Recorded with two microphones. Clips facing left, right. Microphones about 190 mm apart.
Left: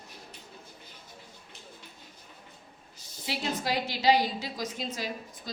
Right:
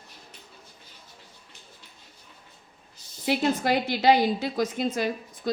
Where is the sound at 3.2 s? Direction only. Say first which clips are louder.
Right 8 dB; 55° right (ahead or behind).